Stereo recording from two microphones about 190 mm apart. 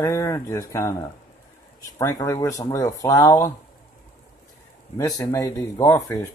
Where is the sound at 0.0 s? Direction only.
15° left (ahead or behind).